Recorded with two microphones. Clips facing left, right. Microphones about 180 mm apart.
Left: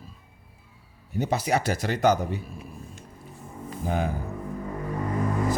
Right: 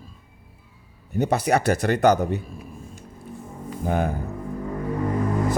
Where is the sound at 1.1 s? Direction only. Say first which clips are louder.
Right 4 dB; 60° right (ahead or behind).